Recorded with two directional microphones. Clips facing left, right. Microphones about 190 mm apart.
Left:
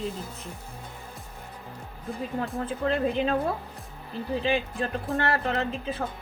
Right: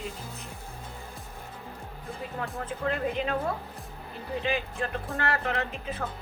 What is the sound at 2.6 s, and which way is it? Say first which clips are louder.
Speech: left 3 dB; 30° left (ahead or behind).